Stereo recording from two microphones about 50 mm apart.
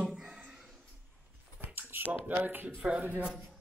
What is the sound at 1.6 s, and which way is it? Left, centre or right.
Speech, right.